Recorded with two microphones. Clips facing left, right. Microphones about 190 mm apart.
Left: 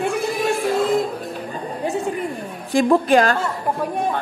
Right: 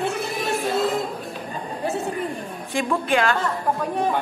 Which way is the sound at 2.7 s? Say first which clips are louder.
Left 7 dB; 35° left (ahead or behind).